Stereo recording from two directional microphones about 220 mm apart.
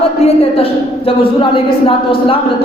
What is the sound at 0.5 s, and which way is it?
A woman's voice, 25° left (ahead or behind).